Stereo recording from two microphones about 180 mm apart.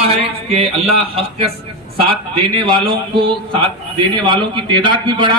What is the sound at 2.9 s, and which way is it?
A man's voice, 30° right (ahead or behind).